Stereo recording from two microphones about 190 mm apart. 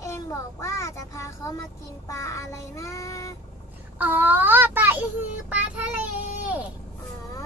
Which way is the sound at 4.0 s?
10° right (ahead or behind).